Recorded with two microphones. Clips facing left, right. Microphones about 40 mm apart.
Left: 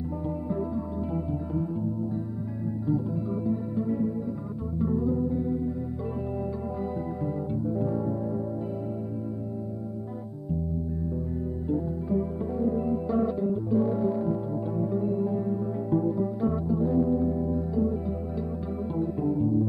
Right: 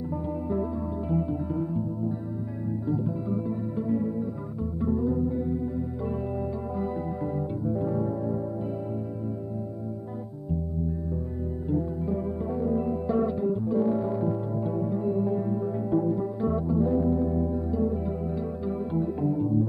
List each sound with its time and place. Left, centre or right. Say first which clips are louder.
7.7 s music: right 1 dB; centre
11.8 s music: left 1 dB; centre